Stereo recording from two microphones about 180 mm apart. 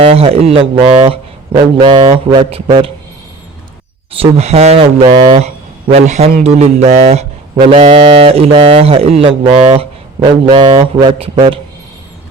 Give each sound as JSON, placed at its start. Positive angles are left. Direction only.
{"t": 0.0, "sound": "speech", "side_deg": -35}
{"t": 4.1, "sound": "speech", "side_deg": -35}